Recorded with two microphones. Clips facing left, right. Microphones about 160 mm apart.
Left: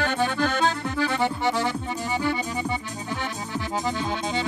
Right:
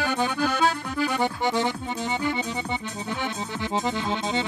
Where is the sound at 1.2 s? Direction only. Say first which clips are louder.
Even; 15° right (ahead or behind).